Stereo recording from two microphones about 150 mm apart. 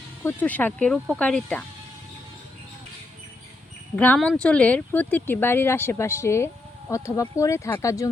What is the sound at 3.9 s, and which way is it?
Speech, 10° left (ahead or behind).